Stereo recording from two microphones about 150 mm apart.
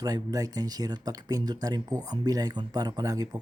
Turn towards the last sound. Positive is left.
turn(degrees=-25)  # may be behind; listen again after turning